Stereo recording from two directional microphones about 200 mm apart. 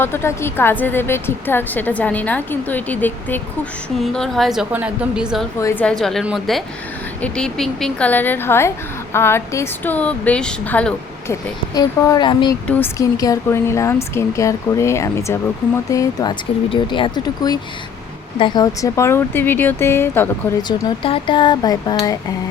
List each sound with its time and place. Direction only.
0.0 s a woman's voice: 10° left (ahead or behind); by 5.5 s 5° right (ahead or behind)
5.5 s a woman's voice: 15° left (ahead or behind)
5.8 s a woman's voice: 5° left (ahead or behind)
11.7 s speech: 20° left (ahead or behind)
12.6 s a woman's voice: 10° left (ahead or behind)